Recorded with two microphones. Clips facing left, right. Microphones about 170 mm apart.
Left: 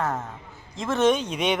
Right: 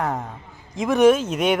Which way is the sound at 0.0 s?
15° right (ahead or behind).